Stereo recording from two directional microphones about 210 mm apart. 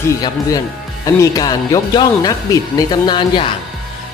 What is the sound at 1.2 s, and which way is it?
Speech, 20° left (ahead or behind).